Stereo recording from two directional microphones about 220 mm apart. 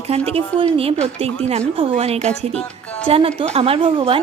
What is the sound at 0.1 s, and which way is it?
A woman's voice, 25° right (ahead or behind).